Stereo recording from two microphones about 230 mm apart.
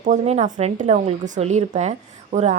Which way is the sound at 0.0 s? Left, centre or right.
Right.